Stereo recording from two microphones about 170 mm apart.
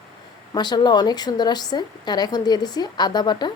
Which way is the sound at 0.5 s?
25° left (ahead or behind).